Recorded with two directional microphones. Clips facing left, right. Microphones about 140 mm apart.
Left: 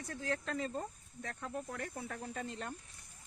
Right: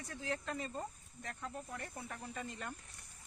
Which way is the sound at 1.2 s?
75° left (ahead or behind).